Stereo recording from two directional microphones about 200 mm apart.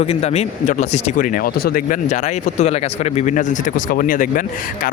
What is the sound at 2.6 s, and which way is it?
Speech, 30° left (ahead or behind).